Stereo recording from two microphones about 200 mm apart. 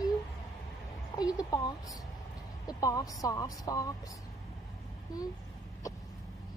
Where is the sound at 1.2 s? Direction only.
20° left (ahead or behind).